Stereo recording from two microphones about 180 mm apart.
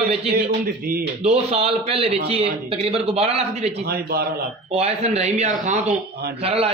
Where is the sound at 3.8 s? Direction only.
60° right (ahead or behind).